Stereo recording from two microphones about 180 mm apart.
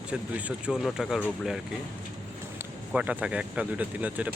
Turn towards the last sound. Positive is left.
turn(degrees=-10)  # may be behind; listen again after turning